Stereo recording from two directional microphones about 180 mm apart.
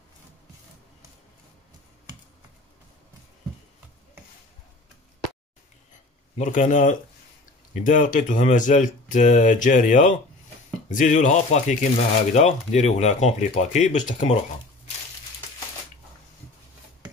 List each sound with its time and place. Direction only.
6.3 s speech: 45° left (ahead or behind)